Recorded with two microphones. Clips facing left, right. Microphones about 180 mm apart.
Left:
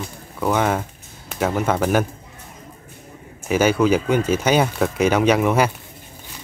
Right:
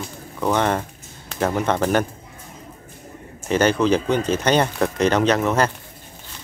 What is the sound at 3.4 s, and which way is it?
Speech, 10° left (ahead or behind).